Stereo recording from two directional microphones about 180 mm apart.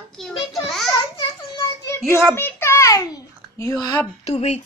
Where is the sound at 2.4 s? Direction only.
10° left (ahead or behind).